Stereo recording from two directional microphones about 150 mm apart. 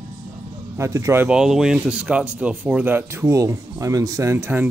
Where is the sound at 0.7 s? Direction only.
20° right (ahead or behind).